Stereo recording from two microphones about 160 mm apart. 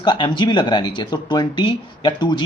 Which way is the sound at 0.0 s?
30° left (ahead or behind).